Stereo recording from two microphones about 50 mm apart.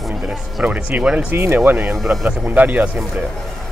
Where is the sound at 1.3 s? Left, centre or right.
Right.